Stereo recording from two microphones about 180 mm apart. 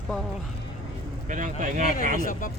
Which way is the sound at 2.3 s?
50° left (ahead or behind).